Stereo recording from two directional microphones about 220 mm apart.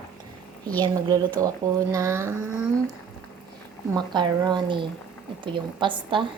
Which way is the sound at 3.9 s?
20° right (ahead or behind).